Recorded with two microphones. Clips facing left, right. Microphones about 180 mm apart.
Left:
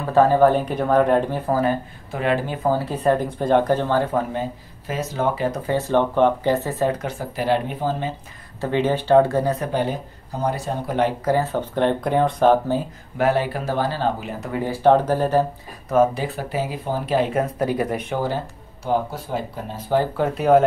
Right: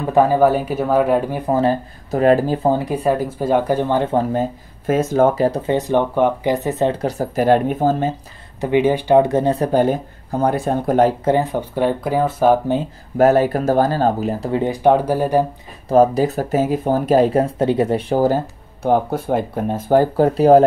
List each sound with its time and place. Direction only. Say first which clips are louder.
0.1 s speech: right 1 dB; 10° right (ahead or behind)
1.5 s speech: right 4 dB; 30° right (ahead or behind)
2.0 s speech: right 8 dB; 40° right (ahead or behind)
2.7 s speech: right 2 dB; 15° right (ahead or behind)
4.2 s speech: right 6 dB; 40° right (ahead or behind)
5.7 s speech: right 2 dB; 15° right (ahead or behind); by 8.1 s 45° right (ahead or behind)
8.5 s speech: right 5 dB; 15° right (ahead or behind)
9.7 s speech: right 7 dB; 45° right (ahead or behind)
11.2 s speech: right 3 dB; 15° right (ahead or behind)
13.2 s speech: right 7 dB; 45° right (ahead or behind)
14.5 s speech: right 1 dB; 20° right (ahead or behind)
15.9 s speech: right 5 dB; 35° right (ahead or behind)
18.1 s speech: right 10 dB; 40° right (ahead or behind)
18.9 s speech: right 6 dB; 55° right (ahead or behind); by 20.6 s 35° right (ahead or behind)